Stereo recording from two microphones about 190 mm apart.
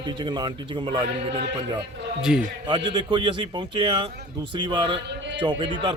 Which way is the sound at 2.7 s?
25° right (ahead or behind).